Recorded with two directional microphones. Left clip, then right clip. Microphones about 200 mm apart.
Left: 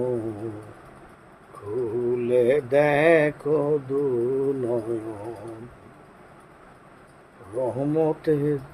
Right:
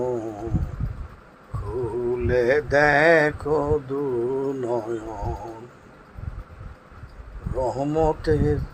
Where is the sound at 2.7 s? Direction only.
10° left (ahead or behind).